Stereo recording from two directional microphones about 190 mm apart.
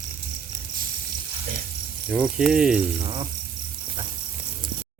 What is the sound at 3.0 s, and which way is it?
Speech, 25° right (ahead or behind).